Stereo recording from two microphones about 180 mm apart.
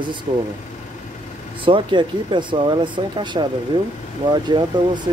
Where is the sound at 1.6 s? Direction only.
30° right (ahead or behind).